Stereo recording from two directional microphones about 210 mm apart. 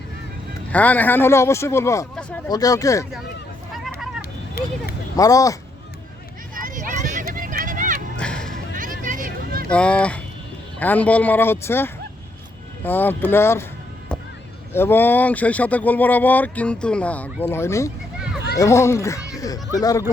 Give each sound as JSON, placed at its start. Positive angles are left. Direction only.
{"t": 0.7, "sound": "speech", "side_deg": 5}
{"t": 4.2, "sound": "vehicle", "side_deg": 45}
{"t": 5.1, "sound": "speech", "side_deg": 15}
{"t": 6.5, "sound": "vehicle", "side_deg": -40}
{"t": 8.2, "sound": "music", "side_deg": 5}
{"t": 8.5, "sound": "a sound", "side_deg": -40}
{"t": 9.6, "sound": "speech", "side_deg": 5}
{"t": 14.1, "sound": "a sound", "side_deg": 5}
{"t": 14.7, "sound": "speech", "side_deg": 10}
{"t": 19.3, "sound": "music", "side_deg": 15}
{"t": 19.7, "sound": "speech", "side_deg": 15}